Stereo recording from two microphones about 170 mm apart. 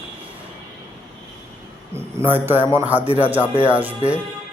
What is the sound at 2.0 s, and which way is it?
Speech, 15° right (ahead or behind).